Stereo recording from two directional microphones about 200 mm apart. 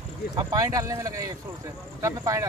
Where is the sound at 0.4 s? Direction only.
15° right (ahead or behind).